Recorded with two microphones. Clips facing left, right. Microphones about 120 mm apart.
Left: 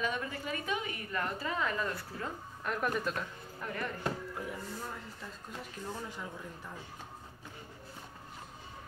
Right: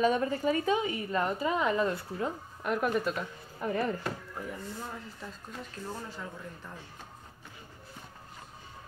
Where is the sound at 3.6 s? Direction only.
25° right (ahead or behind).